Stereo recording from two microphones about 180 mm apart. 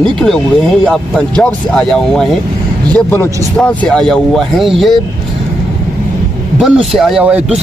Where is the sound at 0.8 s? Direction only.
5° left (ahead or behind).